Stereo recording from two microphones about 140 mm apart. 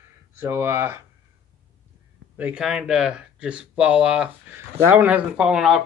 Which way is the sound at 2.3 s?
10° right (ahead or behind).